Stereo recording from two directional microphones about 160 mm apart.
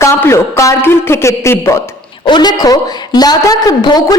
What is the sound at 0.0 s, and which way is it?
A man's voice, 15° left (ahead or behind).